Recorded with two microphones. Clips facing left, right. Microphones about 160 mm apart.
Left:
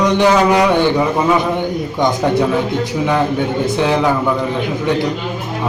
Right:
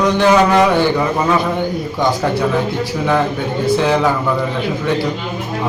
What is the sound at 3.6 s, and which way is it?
Speech, 20° left (ahead or behind).